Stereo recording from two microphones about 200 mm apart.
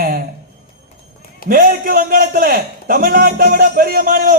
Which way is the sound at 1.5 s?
45° right (ahead or behind).